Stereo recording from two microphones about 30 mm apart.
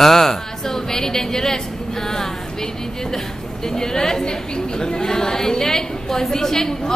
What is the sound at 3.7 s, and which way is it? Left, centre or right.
A woman's voice, left.